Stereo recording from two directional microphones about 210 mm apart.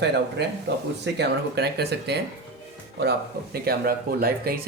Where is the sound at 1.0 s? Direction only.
50° right (ahead or behind).